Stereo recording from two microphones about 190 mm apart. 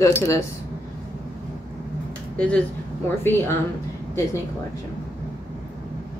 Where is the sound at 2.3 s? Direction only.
5° left (ahead or behind).